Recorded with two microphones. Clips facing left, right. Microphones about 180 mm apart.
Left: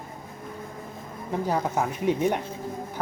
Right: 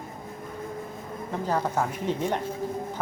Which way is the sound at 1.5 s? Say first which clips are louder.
Even; 10° left (ahead or behind).